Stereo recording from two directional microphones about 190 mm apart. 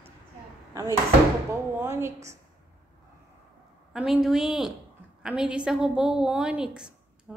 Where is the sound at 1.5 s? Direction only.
15° right (ahead or behind).